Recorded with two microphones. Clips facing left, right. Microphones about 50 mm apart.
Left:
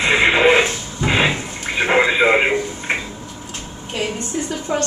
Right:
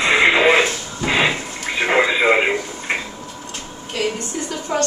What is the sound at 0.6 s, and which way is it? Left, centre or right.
Radio, left.